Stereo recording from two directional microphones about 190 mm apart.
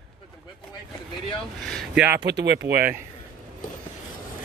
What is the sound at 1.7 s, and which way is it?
Speech, 5° right (ahead or behind).